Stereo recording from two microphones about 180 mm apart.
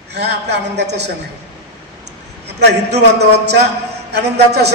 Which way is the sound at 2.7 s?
65° right (ahead or behind).